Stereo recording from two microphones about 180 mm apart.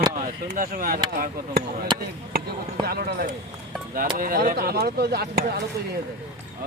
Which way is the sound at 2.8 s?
60° right (ahead or behind).